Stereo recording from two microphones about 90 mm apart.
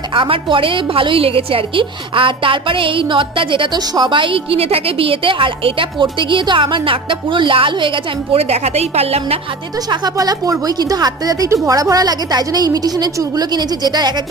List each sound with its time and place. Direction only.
0.1 s a woman's voice: 70° right (ahead or behind)
8.9 s a woman's voice: 90° right
9.8 s a woman's voice: 45° right (ahead or behind)